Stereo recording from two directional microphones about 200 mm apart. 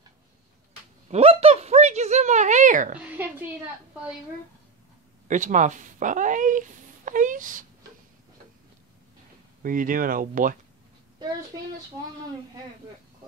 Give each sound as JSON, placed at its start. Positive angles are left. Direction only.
{"t": 1.1, "sound": "a sound", "side_deg": -30}
{"t": 3.1, "sound": "a woman's voice", "side_deg": -10}
{"t": 5.3, "sound": "speech", "side_deg": -40}
{"t": 9.6, "sound": "speech", "side_deg": -45}